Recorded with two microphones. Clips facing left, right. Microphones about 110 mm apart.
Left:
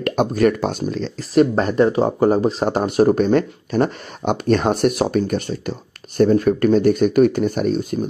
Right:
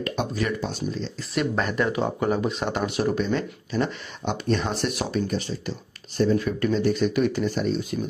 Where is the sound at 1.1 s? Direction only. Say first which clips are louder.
Left 11 dB; 40° left (ahead or behind).